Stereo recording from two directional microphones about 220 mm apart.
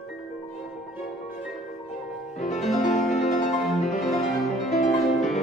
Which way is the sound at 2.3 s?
30° left (ahead or behind).